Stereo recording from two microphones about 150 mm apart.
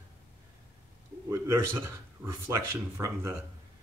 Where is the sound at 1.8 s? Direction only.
15° right (ahead or behind).